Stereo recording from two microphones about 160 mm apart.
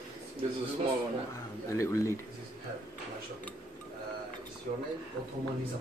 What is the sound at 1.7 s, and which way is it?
Speech, 20° left (ahead or behind).